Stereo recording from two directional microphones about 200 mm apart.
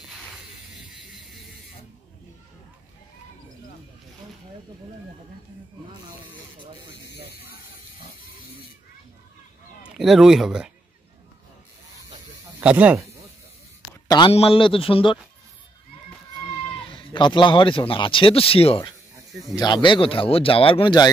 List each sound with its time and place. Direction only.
6.8 s spray: 20° right (ahead or behind)
9.8 s speech: centre (ahead or behind)
12.5 s speech: 5° right (ahead or behind)
14.0 s speech: 20° left (ahead or behind)
16.8 s speech: 25° left (ahead or behind)